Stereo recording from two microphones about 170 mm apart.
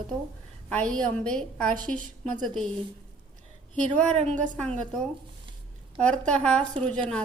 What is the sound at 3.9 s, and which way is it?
Speech, 40° right (ahead or behind).